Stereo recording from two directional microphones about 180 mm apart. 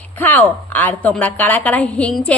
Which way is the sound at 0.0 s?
10° left (ahead or behind).